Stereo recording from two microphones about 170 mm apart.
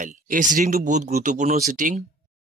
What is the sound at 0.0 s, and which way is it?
Speech, 50° right (ahead or behind).